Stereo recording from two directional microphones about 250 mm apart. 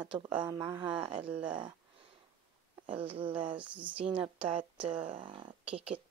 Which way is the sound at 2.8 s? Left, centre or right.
Right.